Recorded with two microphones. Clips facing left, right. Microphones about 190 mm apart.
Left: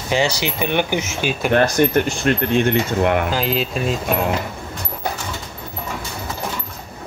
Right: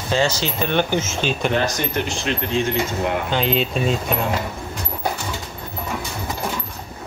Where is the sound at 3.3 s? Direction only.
Centre (ahead or behind).